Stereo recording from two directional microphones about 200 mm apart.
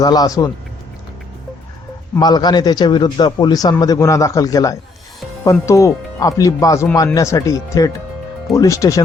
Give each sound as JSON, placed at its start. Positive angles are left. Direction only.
{"t": 0.0, "sound": "a man's voice", "side_deg": 20}
{"t": 2.1, "sound": "a man's voice", "side_deg": 20}